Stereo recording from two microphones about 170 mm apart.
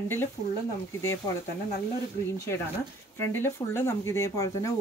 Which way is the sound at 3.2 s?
15° left (ahead or behind).